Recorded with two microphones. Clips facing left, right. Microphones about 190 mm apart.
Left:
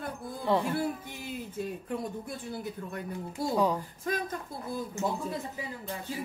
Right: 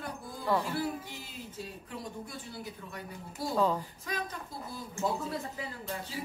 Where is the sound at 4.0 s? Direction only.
50° left (ahead or behind).